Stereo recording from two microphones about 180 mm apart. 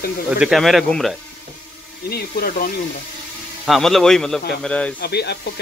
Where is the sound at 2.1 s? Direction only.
55° left (ahead or behind).